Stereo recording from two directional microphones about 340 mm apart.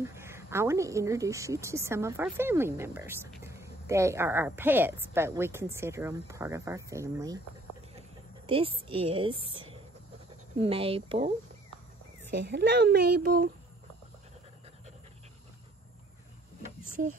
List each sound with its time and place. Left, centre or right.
0.0 s a woman's voice: centre
8.5 s a woman's voice: centre
12.3 s speech: right